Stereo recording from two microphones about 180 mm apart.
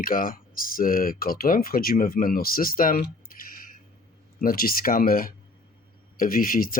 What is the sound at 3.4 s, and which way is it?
Music, 50° left (ahead or behind).